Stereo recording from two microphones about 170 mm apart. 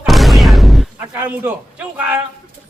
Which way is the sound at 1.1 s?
10° right (ahead or behind).